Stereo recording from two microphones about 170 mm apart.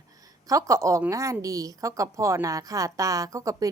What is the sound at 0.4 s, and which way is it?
A woman's voice, 20° right (ahead or behind).